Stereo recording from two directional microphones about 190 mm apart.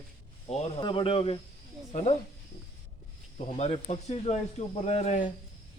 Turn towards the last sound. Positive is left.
turn(degrees=35)  # may be behind; listen again after turning